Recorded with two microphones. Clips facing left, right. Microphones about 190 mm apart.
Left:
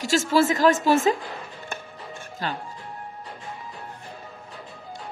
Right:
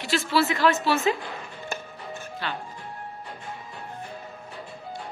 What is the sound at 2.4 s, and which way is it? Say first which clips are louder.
Speech: left 3 dB; 40° left (ahead or behind).